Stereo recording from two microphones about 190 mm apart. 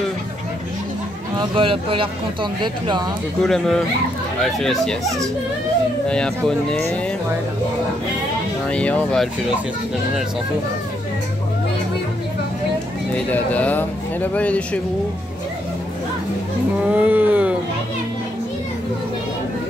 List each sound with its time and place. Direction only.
1.3 s speech: 25° right (ahead or behind)
3.4 s speech: centre (ahead or behind)
8.6 s speech: 5° left (ahead or behind)
13.1 s speech: 5° left (ahead or behind)
16.9 s a sound: 10° right (ahead or behind)